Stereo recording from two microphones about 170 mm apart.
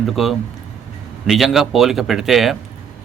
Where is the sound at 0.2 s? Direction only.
Centre (ahead or behind).